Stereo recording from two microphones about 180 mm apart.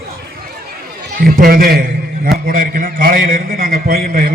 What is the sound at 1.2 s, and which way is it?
A man's voice, 55° right (ahead or behind).